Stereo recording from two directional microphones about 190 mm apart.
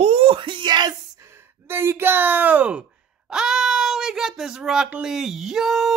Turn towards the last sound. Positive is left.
turn(degrees=0)  # may be behind; listen again after turning